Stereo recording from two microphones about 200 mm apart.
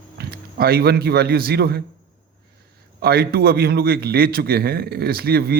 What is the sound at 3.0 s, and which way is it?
A man's voice, 50° right (ahead or behind).